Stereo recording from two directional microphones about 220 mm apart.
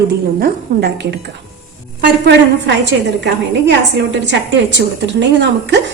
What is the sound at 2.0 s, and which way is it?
A woman's voice, 50° right (ahead or behind).